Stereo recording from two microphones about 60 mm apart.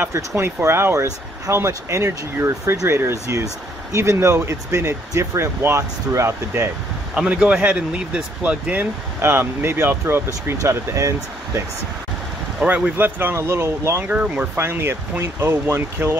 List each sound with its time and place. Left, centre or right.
0.1 s speech: right
0.6 s speech: right
7.2 s speech: centre
9.3 s speech: right
11.0 s speech: right
12.6 s speech: right
12.9 s speech: right
13.4 s speech: right
14.0 s speech: right
14.6 s speech: right